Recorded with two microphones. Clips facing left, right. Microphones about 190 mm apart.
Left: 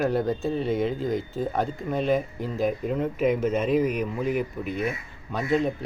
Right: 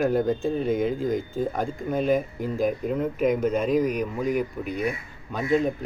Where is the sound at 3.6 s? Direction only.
40° right (ahead or behind).